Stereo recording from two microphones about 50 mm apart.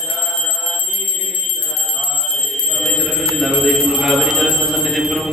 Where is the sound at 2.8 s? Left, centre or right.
Centre.